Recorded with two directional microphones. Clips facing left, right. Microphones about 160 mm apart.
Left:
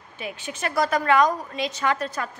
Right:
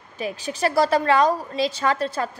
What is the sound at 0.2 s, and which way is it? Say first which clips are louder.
A woman's voice: right 6 dB; 35° right (ahead or behind).